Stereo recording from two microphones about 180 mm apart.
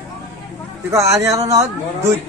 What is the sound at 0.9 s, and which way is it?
Speech, 15° right (ahead or behind).